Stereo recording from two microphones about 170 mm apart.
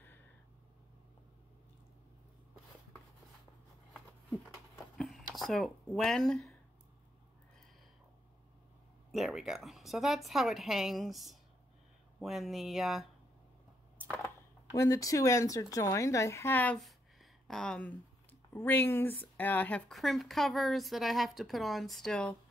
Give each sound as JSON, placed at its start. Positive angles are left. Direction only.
{"t": 3.9, "sound": "a sound", "side_deg": 0}
{"t": 9.1, "sound": "speech", "side_deg": 0}
{"t": 14.1, "sound": "a woman's voice", "side_deg": 15}